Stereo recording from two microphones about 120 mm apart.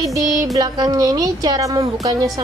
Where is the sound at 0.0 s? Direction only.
30° right (ahead or behind).